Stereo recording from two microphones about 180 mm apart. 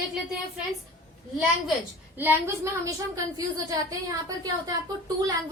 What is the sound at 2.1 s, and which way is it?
A woman's voice, 10° right (ahead or behind).